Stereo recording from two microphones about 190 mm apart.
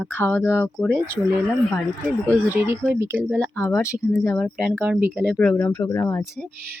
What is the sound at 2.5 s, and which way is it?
Speech, 10° right (ahead or behind).